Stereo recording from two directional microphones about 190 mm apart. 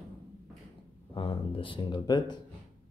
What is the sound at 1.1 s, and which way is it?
Speech, 25° left (ahead or behind).